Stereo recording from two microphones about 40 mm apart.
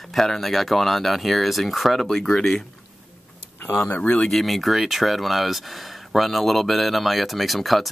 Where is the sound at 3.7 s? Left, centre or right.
Left.